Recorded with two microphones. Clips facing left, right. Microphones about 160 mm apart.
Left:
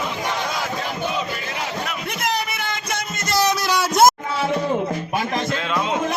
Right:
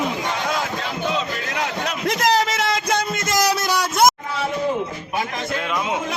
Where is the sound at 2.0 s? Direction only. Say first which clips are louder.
Right 8 dB; 90° right.